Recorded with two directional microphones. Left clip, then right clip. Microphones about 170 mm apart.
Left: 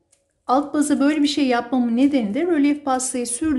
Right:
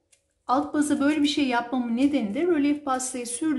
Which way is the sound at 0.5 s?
20° left (ahead or behind).